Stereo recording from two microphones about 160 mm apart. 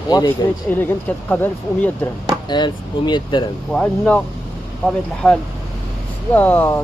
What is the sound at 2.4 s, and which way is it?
Speech, 25° left (ahead or behind).